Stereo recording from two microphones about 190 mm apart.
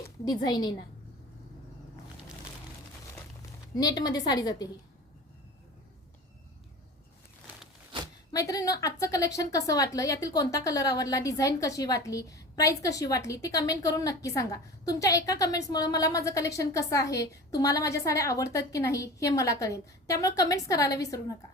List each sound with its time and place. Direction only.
0.4 s a woman's voice: 20° left (ahead or behind)
3.8 s a woman's voice: 20° left (ahead or behind)
8.3 s a woman's voice: 20° left (ahead or behind)